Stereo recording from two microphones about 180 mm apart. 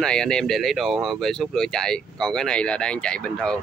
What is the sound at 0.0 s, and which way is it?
Speech, 5° left (ahead or behind).